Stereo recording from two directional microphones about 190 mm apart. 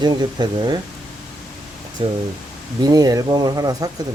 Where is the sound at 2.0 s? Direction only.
25° right (ahead or behind).